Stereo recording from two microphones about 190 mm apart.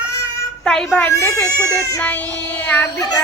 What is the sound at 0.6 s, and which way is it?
Speech, centre (ahead or behind).